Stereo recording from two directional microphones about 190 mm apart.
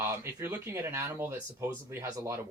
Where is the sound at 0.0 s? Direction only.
15° right (ahead or behind).